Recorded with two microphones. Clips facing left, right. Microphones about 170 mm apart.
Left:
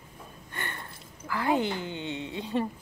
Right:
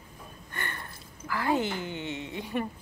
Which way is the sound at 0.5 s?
20° left (ahead or behind).